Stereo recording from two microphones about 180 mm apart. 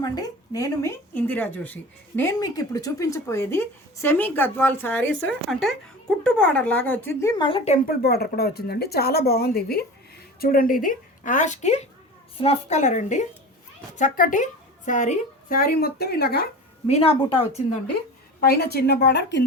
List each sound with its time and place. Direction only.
0.0 s speech: 20° left (ahead or behind)
7.2 s a woman's voice: 20° left (ahead or behind)
7.9 s a woman's voice: 60° left (ahead or behind)
16.8 s a woman's voice: 35° left (ahead or behind)
18.3 s speech: 60° left (ahead or behind)